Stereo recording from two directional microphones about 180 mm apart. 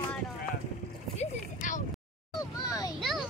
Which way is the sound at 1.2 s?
45° left (ahead or behind).